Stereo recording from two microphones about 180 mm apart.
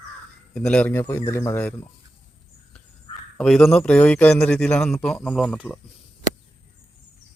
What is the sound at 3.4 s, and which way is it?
A man's voice, centre (ahead or behind).